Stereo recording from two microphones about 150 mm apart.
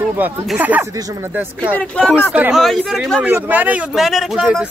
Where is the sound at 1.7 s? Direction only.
5° left (ahead or behind).